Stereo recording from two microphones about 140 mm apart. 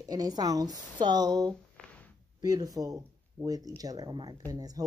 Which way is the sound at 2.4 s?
25° right (ahead or behind).